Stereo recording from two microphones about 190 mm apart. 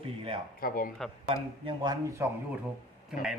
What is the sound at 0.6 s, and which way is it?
Speech, 50° left (ahead or behind).